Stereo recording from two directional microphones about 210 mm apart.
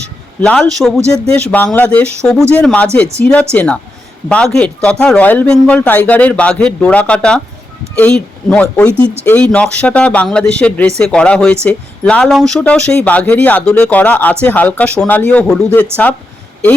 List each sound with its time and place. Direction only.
0.4 s a man's voice: 5° left (ahead or behind)
9.0 s speech: 25° right (ahead or behind)
9.2 s a man's voice: 5° left (ahead or behind)